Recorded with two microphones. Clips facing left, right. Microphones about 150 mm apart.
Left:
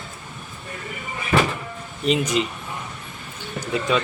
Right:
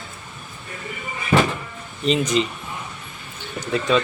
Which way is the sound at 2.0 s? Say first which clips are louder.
Right 1 dB; 10° left (ahead or behind).